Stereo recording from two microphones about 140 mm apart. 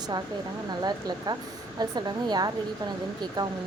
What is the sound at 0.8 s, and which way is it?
A woman's voice, 30° right (ahead or behind).